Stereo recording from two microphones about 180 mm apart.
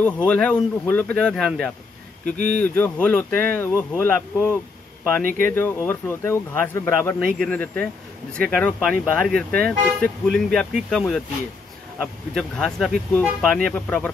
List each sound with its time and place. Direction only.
0.0 s speech: 10° left (ahead or behind)
2.2 s speech: 60° right (ahead or behind)
2.6 s speech: 10° left (ahead or behind)
12.4 s speech: 5° left (ahead or behind)